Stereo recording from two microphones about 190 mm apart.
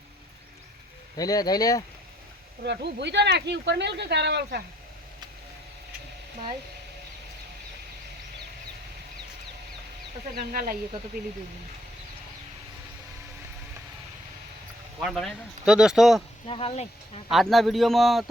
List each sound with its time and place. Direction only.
1.1 s speech: 20° left (ahead or behind)
2.6 s speech: 65° right (ahead or behind)
10.3 s speech: 50° right (ahead or behind)
15.0 s speech: centre (ahead or behind)
16.5 s speech: 30° left (ahead or behind)
17.3 s speech: centre (ahead or behind)